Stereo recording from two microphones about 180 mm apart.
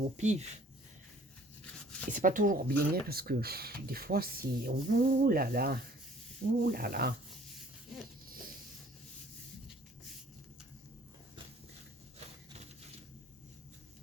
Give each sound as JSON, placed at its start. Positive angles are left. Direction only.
{"t": 0.2, "sound": "speech", "side_deg": -40}
{"t": 2.0, "sound": "speech", "side_deg": -45}